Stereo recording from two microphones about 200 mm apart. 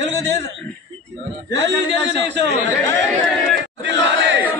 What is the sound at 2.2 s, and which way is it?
Chatter, 60° right (ahead or behind).